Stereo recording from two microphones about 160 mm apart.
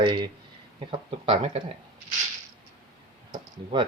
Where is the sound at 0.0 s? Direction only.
30° right (ahead or behind).